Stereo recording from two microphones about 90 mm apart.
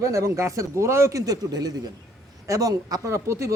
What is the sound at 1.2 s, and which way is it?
A man's voice, 45° right (ahead or behind).